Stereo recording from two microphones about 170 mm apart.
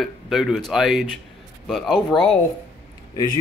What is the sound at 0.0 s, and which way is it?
Speech, centre (ahead or behind).